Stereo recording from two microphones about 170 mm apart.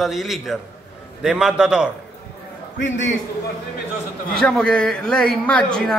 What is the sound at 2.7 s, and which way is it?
Speech, 90° left.